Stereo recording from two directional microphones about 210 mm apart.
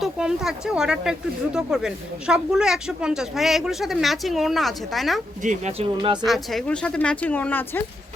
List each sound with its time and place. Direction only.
0.0 s speech: 5° right (ahead or behind)
5.4 s speech: 35° right (ahead or behind)
6.2 s speech: centre (ahead or behind)